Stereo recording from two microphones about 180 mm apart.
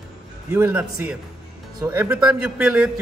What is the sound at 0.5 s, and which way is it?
A man's voice, 10° right (ahead or behind).